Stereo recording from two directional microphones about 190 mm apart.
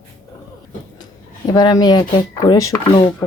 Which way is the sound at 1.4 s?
20° left (ahead or behind).